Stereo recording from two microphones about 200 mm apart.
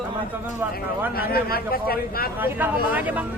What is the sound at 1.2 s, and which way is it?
A man's voice, 50° left (ahead or behind).